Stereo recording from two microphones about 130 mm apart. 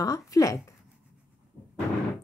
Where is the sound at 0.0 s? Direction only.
25° left (ahead or behind).